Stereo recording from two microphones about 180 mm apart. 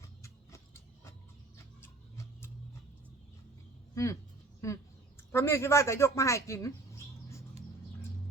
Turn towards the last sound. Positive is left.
turn(degrees=15)  # may be behind; listen again after turning